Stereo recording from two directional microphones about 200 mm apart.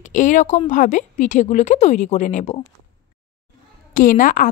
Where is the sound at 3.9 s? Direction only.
45° left (ahead or behind).